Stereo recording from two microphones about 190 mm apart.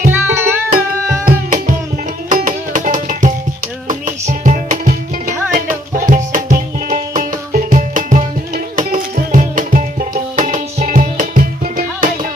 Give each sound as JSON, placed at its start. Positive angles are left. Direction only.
{"t": 0.1, "sound": "music", "side_deg": -10}
{"t": 1.2, "sound": "music", "side_deg": -45}